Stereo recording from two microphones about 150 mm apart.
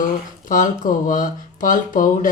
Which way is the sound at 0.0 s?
65° left (ahead or behind).